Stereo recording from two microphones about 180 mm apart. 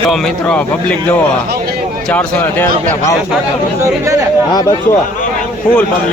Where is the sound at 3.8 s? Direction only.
15° right (ahead or behind).